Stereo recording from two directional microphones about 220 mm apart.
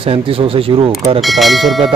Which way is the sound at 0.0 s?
25° right (ahead or behind).